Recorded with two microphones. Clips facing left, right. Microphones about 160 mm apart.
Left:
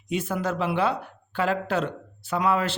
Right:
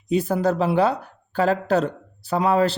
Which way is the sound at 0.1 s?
35° right (ahead or behind).